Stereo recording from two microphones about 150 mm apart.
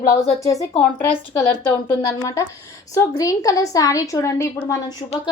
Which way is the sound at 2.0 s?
25° left (ahead or behind).